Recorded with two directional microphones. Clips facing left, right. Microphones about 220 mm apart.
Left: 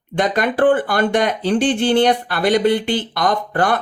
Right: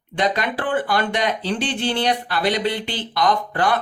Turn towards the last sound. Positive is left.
turn(degrees=50)  # may be behind; listen again after turning